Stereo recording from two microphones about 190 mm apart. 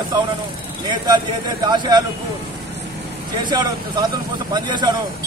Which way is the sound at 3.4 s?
25° right (ahead or behind).